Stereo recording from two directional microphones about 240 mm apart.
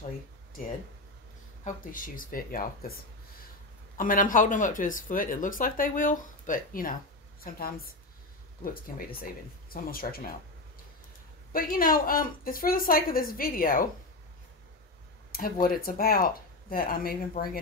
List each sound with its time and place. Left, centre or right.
1.6 s speech: left
11.5 s speech: left
15.3 s speech: left